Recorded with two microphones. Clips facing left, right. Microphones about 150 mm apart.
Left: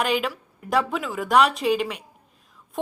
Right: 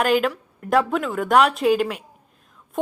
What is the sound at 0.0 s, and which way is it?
A woman's voice, centre (ahead or behind).